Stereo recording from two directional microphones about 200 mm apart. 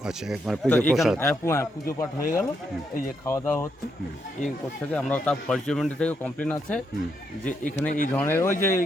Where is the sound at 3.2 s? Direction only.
10° left (ahead or behind).